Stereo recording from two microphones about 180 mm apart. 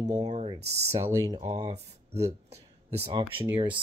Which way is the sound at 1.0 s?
20° right (ahead or behind).